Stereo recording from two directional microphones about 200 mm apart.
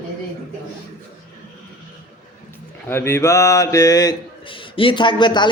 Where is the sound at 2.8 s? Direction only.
10° left (ahead or behind).